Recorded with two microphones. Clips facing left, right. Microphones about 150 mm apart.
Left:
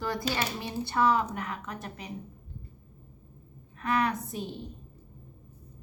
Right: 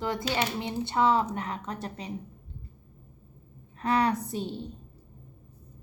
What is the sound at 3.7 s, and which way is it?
Speech, 30° right (ahead or behind).